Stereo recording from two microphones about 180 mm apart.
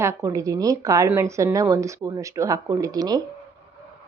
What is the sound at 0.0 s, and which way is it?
A woman's voice, 15° right (ahead or behind).